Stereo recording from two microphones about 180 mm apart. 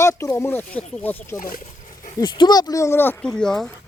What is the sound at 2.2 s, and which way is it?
Speech, 25° left (ahead or behind).